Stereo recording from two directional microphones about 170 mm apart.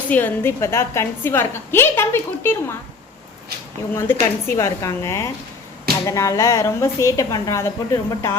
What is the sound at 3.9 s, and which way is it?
A woman's voice, 15° left (ahead or behind).